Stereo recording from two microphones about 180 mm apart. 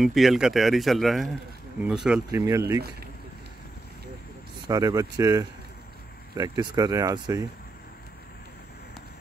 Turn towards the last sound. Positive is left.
turn(degrees=-20)  # may be behind; listen again after turning